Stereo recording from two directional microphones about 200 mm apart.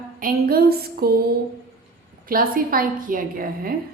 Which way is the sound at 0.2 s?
45° right (ahead or behind).